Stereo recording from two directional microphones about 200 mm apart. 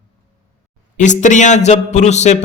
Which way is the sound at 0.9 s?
40° left (ahead or behind).